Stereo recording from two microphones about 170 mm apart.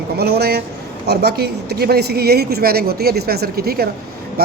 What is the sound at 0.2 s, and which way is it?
A woman's voice, 70° right (ahead or behind).